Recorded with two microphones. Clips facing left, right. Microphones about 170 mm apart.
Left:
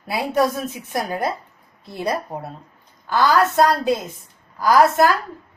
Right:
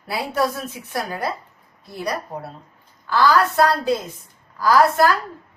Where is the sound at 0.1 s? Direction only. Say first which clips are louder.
Left 3 dB; 20° left (ahead or behind).